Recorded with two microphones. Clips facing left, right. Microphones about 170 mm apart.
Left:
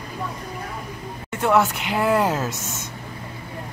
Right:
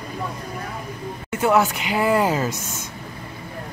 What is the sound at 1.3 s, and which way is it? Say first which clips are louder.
Speech: right 1 dB; centre (ahead or behind).